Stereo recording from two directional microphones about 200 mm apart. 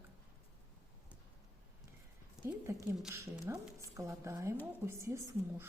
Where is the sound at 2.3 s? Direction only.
5° right (ahead or behind).